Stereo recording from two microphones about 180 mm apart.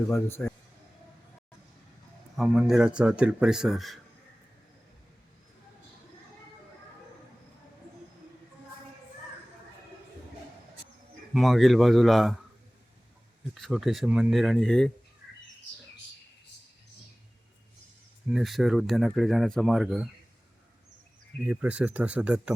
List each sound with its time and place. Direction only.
0.1 s a man's voice: 15° left (ahead or behind)
2.3 s speech: 5° right (ahead or behind)
11.3 s speech: centre (ahead or behind)
13.5 s speech: centre (ahead or behind)
18.3 s speech: centre (ahead or behind)
21.4 s speech: 10° right (ahead or behind)